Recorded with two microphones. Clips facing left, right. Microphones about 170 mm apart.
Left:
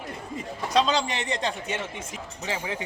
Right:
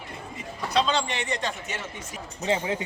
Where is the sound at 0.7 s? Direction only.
40° left (ahead or behind).